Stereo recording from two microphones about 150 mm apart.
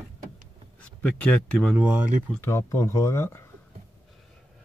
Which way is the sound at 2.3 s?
20° left (ahead or behind).